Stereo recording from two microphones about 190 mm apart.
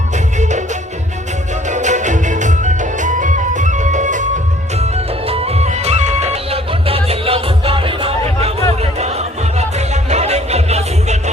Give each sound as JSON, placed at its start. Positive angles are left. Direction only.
{"t": 0.3, "sound": "music", "side_deg": -40}
{"t": 1.6, "sound": "music", "side_deg": -40}